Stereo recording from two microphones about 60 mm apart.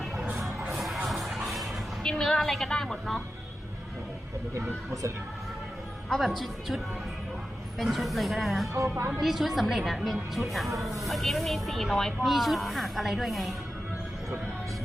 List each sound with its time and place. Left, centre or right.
0.7 s music: centre
2.0 s a woman's voice: centre
6.1 s speech: centre
8.7 s speech: right
9.2 s speech: centre